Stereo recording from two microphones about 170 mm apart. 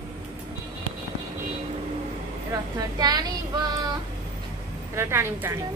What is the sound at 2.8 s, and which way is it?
Speech, 20° right (ahead or behind).